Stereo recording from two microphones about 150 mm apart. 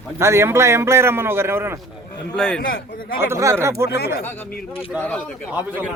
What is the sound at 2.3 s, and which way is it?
Speech, 5° left (ahead or behind).